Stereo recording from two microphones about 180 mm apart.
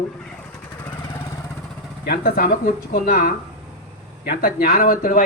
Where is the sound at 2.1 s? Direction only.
55° left (ahead or behind).